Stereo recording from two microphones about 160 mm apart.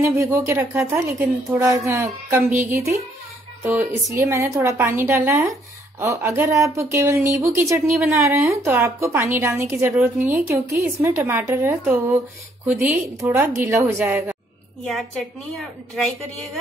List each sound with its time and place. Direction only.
0.0 s a woman's voice: 15° right (ahead or behind)